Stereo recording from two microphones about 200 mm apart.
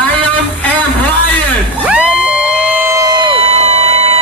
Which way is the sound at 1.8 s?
5° right (ahead or behind).